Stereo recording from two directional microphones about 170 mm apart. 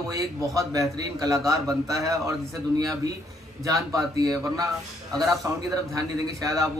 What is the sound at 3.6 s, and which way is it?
A man's voice, 20° right (ahead or behind).